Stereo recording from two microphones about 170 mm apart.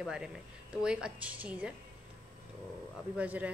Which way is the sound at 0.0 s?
5° right (ahead or behind).